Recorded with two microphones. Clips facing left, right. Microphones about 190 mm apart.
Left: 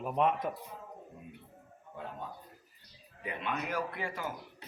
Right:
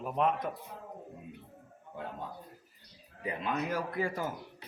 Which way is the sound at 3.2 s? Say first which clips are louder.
Right 3 dB; 35° right (ahead or behind).